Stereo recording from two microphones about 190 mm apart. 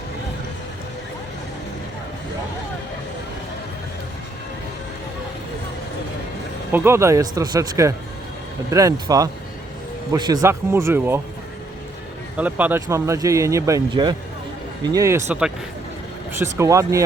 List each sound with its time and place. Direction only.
6.7 s speech: 10° right (ahead or behind)
12.4 s speech: 10° right (ahead or behind)
16.4 s speech: 15° right (ahead or behind)